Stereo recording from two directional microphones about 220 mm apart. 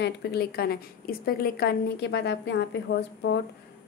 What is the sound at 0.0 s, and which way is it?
A woman's voice, 45° left (ahead or behind).